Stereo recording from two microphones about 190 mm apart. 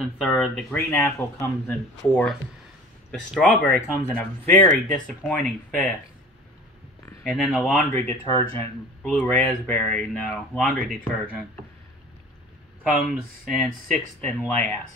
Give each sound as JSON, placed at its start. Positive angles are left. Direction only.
{"t": 0.0, "sound": "speech", "side_deg": 5}
{"t": 7.2, "sound": "speech", "side_deg": 0}
{"t": 7.9, "sound": "speech", "side_deg": 10}
{"t": 13.1, "sound": "speech", "side_deg": 0}